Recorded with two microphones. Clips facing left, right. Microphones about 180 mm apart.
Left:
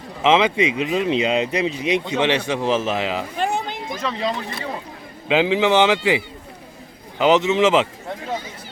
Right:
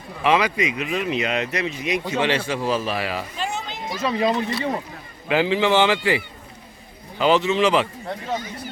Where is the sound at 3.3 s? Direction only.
55° left (ahead or behind).